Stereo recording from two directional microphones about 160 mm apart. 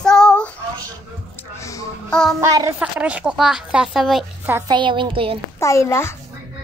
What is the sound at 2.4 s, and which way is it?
Speech, 20° right (ahead or behind).